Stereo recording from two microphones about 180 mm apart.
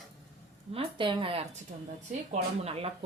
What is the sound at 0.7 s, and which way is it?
Speech, 30° right (ahead or behind).